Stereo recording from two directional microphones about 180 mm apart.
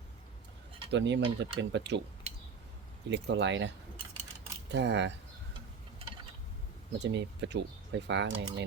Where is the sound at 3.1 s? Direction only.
70° right (ahead or behind).